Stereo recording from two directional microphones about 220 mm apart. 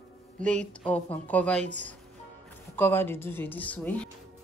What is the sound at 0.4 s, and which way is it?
Speech, 5° left (ahead or behind).